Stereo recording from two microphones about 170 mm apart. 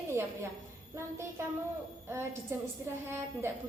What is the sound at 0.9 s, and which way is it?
Speech, 15° right (ahead or behind).